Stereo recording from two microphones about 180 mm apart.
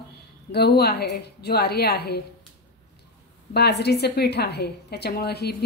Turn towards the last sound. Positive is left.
turn(degrees=60)  # may be behind; listen again after turning